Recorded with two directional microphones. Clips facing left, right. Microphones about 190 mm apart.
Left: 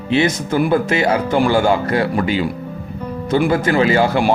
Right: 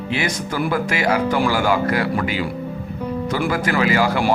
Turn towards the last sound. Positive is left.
turn(degrees=25)  # may be behind; listen again after turning